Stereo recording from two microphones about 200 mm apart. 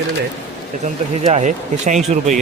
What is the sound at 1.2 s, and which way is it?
Speech, 35° right (ahead or behind).